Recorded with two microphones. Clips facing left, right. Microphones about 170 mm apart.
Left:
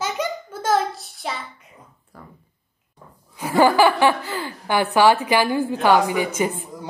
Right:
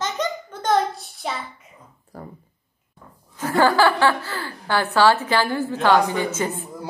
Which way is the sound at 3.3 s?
15° left (ahead or behind).